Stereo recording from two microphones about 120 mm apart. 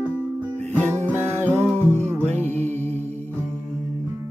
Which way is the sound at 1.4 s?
20° right (ahead or behind).